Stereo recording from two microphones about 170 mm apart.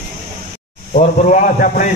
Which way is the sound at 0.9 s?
50° left (ahead or behind).